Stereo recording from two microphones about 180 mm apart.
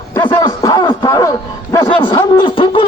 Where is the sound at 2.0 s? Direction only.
30° left (ahead or behind).